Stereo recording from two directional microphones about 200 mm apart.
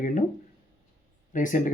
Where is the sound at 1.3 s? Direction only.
40° left (ahead or behind).